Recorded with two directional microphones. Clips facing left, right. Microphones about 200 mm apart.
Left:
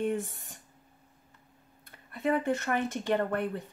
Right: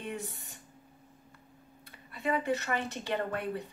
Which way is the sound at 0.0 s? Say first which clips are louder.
Left 8 dB; 50° left (ahead or behind).